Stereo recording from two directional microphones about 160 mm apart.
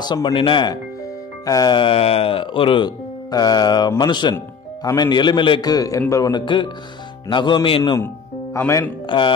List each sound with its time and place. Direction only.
0.0 s speech: 25° left (ahead or behind)
8.5 s speech: 15° left (ahead or behind)
9.0 s speech: 30° left (ahead or behind)